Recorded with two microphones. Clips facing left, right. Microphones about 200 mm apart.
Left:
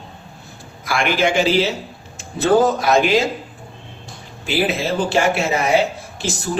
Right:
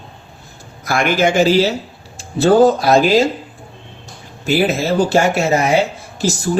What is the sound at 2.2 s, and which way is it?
Speech, 30° right (ahead or behind).